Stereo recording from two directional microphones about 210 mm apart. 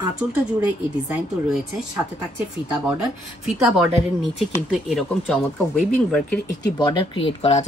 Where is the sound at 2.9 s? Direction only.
5° right (ahead or behind).